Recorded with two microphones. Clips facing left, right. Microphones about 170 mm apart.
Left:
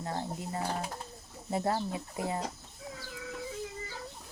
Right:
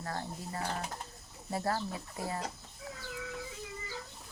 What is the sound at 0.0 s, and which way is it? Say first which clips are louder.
Speech: left 3 dB; 20° left (ahead or behind).